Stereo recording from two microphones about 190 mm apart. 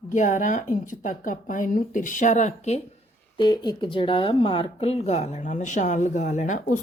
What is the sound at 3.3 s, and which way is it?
A woman's voice, 25° left (ahead or behind).